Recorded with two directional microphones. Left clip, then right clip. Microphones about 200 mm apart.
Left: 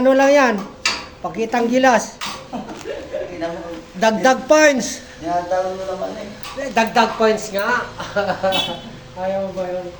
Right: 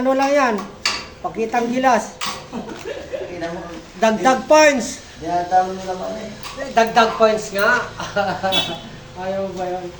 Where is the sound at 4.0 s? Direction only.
50° left (ahead or behind).